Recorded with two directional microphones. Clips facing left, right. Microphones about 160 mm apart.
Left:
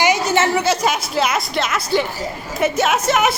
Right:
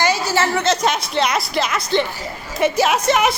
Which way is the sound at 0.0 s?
20° left (ahead or behind).